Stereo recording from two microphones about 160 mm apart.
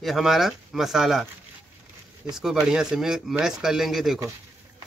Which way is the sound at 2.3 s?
5° right (ahead or behind).